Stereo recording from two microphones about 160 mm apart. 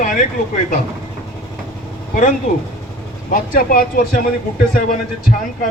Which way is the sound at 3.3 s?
60° left (ahead or behind).